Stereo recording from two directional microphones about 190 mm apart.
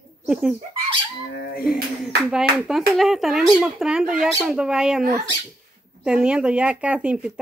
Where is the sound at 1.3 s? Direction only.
55° left (ahead or behind).